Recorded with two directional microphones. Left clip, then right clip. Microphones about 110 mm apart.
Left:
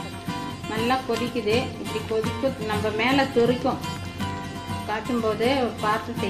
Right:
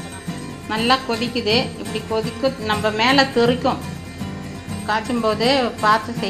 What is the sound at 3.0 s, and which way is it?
Speech, 15° right (ahead or behind).